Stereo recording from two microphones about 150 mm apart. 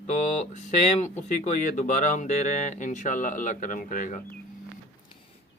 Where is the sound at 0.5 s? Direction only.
50° left (ahead or behind).